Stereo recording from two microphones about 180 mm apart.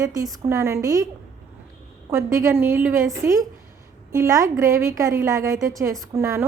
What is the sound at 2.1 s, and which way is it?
A woman's voice, 15° right (ahead or behind).